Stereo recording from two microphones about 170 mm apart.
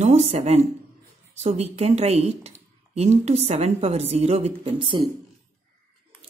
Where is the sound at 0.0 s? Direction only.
40° right (ahead or behind).